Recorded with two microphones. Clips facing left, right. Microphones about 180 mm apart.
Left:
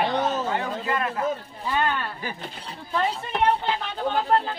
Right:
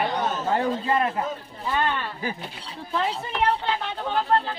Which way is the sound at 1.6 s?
Centre (ahead or behind).